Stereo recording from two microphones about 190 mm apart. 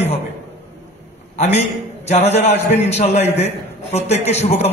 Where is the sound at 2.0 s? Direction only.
35° left (ahead or behind).